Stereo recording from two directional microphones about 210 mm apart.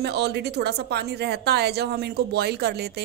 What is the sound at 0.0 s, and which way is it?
A woman's voice, 50° right (ahead or behind).